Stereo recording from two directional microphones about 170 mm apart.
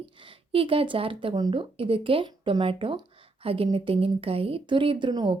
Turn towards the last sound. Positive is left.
turn(degrees=-25)  # may be behind; listen again after turning